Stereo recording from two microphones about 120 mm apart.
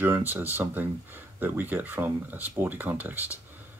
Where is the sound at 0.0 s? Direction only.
15° right (ahead or behind).